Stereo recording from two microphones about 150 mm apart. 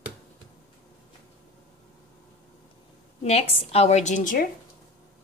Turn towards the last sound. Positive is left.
turn(degrees=60)  # may be behind; listen again after turning